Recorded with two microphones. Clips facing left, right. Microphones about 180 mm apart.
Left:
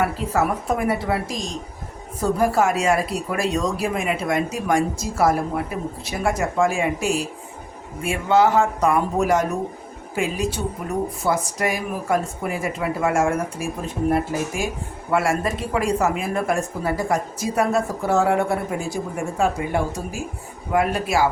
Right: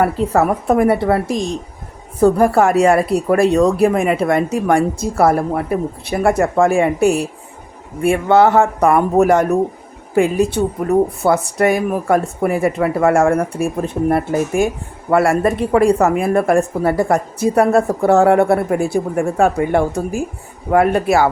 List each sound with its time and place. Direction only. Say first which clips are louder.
0.0 s speech: right 6 dB; 55° right (ahead or behind)